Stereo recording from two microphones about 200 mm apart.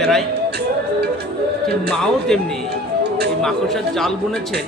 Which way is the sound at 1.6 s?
Centre (ahead or behind).